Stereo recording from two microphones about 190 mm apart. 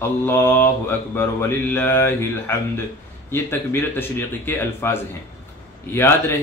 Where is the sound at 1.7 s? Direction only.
10° left (ahead or behind).